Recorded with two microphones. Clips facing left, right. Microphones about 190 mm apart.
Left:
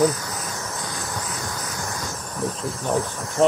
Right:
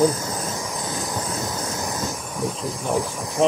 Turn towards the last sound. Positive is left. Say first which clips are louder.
# even
turn(degrees=-10)  # may be behind; listen again after turning